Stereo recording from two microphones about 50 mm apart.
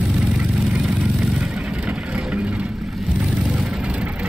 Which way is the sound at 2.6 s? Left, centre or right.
Centre.